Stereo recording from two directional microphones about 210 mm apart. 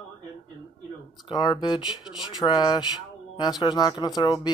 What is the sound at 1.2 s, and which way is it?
Speech, 20° left (ahead or behind).